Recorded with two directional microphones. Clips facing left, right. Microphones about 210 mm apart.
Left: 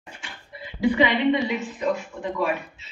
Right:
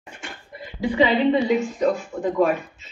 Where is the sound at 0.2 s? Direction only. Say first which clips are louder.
Right 5 dB; 50° right (ahead or behind).